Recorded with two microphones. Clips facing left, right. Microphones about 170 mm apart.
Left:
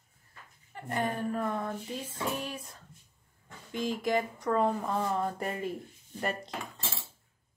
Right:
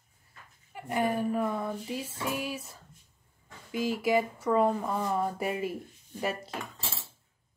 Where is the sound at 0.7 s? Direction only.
10° right (ahead or behind).